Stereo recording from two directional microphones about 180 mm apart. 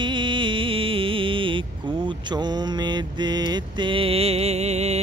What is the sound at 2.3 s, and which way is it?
Mantra, 25° right (ahead or behind).